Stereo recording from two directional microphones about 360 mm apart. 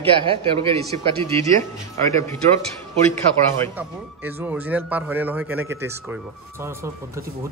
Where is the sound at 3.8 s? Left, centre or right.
Centre.